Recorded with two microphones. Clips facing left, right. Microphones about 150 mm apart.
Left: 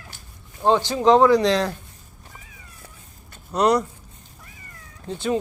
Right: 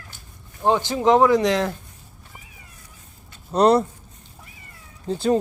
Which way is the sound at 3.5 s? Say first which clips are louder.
Right 3 dB; 30° right (ahead or behind).